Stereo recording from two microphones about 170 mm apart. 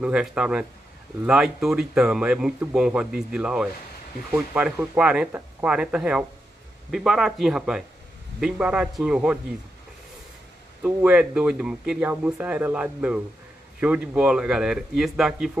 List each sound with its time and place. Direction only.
0.0 s speech: 5° right (ahead or behind)
11.0 s speech: 5° right (ahead or behind)